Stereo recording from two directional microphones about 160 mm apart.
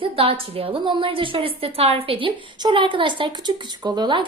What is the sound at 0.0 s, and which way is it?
A woman's voice, 35° right (ahead or behind).